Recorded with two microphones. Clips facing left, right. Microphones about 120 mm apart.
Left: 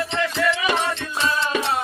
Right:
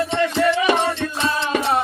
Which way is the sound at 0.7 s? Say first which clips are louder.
Right 4 dB; 55° right (ahead or behind).